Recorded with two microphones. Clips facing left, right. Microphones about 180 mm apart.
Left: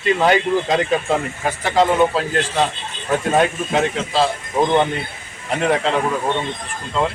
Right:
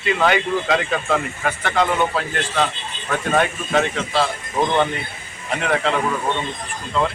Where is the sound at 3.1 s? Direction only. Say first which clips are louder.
Left 3 dB; 20° left (ahead or behind).